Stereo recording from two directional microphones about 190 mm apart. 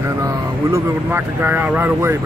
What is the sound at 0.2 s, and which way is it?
Speech, 15° right (ahead or behind).